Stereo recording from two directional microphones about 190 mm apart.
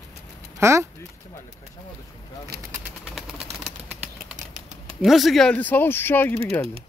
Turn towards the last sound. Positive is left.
turn(degrees=10)  # may be behind; listen again after turning